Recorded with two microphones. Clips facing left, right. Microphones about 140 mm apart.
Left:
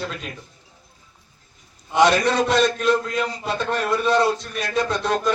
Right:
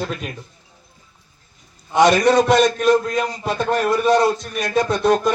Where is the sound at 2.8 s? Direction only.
45° right (ahead or behind).